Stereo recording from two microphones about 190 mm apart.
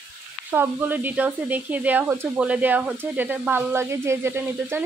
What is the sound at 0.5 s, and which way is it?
Speech, 10° right (ahead or behind).